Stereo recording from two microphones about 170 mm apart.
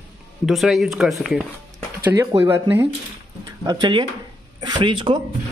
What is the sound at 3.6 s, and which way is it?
Speech, 25° right (ahead or behind).